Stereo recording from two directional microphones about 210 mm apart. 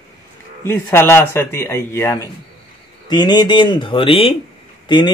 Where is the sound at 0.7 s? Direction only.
10° left (ahead or behind).